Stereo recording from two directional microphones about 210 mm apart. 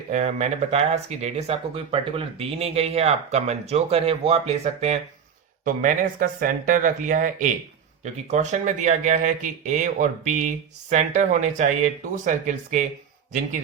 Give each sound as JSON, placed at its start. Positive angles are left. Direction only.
{"t": 0.1, "sound": "speech", "side_deg": -35}